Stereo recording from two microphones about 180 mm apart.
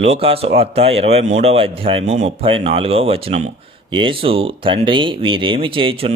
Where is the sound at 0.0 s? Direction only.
35° right (ahead or behind).